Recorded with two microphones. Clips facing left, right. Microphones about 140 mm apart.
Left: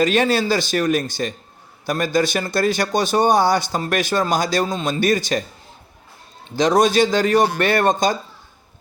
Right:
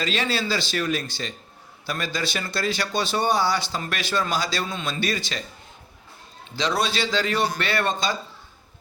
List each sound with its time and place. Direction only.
0.0 s speech: 50° left (ahead or behind)
6.6 s speech: 45° left (ahead or behind)